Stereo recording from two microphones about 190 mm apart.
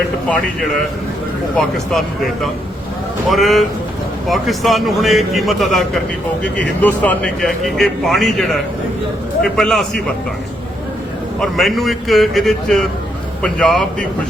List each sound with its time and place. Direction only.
1.5 s speech: centre (ahead or behind)
11.3 s speech: centre (ahead or behind)